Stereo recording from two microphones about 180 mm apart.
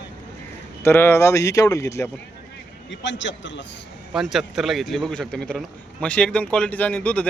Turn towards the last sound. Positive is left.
turn(degrees=5)  # may be behind; listen again after turning